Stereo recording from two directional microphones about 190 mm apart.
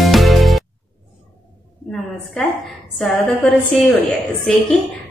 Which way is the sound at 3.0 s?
Centre (ahead or behind).